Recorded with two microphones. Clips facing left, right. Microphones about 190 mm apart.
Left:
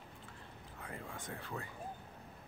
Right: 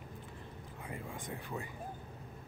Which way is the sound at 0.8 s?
15° right (ahead or behind).